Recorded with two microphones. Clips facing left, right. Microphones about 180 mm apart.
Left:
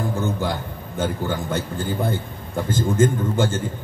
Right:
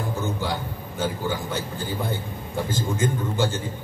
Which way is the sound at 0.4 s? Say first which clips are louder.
Left 2 dB; 50° left (ahead or behind).